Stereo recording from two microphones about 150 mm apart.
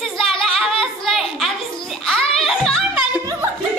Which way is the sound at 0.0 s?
Centre (ahead or behind).